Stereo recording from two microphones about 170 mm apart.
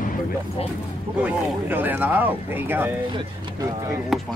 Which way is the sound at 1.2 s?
10° right (ahead or behind).